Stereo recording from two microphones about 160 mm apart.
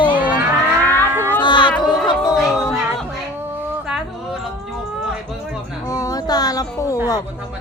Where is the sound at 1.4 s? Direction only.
30° left (ahead or behind).